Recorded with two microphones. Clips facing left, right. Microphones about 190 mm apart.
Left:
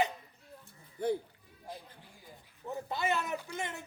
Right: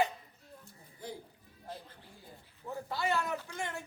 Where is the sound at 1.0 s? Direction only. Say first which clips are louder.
Left 13 dB; 60° left (ahead or behind).